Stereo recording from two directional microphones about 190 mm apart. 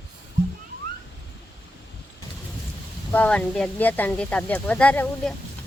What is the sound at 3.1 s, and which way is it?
Speech, 10° left (ahead or behind).